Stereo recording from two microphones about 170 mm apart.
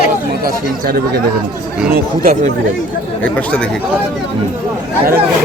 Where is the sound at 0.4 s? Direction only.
65° right (ahead or behind).